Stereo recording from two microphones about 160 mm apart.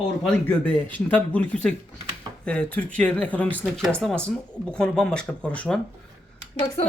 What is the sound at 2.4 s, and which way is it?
Speech, 5° left (ahead or behind).